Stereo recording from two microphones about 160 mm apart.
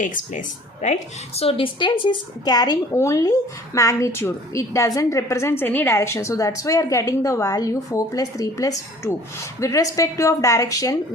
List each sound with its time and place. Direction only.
0.0 s a woman's voice: 55° left (ahead or behind); by 10.9 s 20° left (ahead or behind)